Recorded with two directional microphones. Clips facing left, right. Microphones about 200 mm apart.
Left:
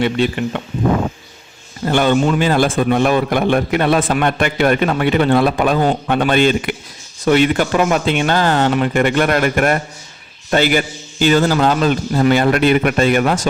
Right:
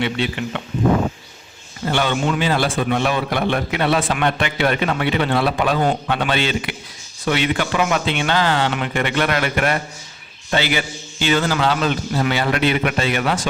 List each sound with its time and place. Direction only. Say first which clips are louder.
0.0 s a man's voice: left 5 dB; 45° left (ahead or behind)
1.8 s a man's voice: left 6 dB; 45° left (ahead or behind)